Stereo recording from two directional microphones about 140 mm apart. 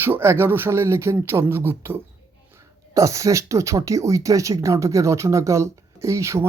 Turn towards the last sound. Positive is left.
turn(degrees=-20)  # may be behind; listen again after turning